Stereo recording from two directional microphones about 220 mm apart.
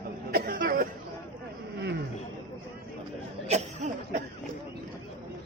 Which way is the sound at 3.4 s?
30° right (ahead or behind).